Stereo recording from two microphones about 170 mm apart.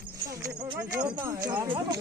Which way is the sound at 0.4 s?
15° right (ahead or behind).